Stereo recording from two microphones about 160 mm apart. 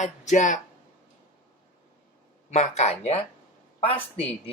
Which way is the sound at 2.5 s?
45° left (ahead or behind).